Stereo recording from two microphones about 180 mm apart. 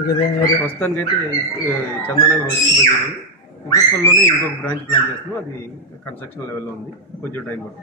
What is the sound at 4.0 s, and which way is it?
Speech, 15° left (ahead or behind).